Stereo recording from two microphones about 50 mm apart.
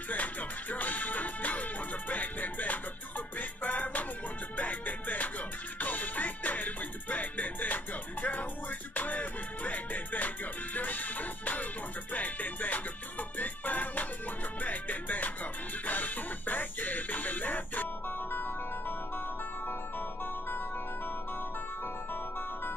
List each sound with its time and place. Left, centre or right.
0.1 s music: left